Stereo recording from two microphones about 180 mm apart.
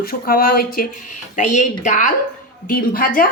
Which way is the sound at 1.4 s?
40° left (ahead or behind).